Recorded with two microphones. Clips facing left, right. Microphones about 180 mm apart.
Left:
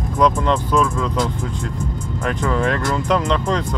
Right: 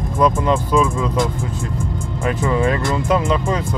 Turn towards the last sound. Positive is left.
turn(degrees=-10)  # may be behind; listen again after turning